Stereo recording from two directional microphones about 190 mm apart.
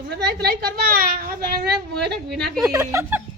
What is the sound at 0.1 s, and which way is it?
A child's voice, 60° right (ahead or behind).